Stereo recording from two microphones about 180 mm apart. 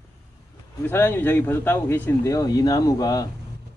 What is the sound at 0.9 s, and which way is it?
Speech, 10° left (ahead or behind).